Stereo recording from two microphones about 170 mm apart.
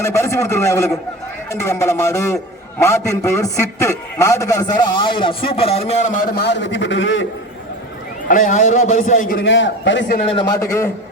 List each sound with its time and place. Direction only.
0.0 s a man's voice: 15° left (ahead or behind)
5.1 s speech: 30° left (ahead or behind)
6.2 s a man's voice: 70° left (ahead or behind); by 7.2 s 90° left
8.3 s a man's voice: 50° left (ahead or behind)
9.3 s a man's voice: 90° left
10.5 s a man's voice: 20° left (ahead or behind)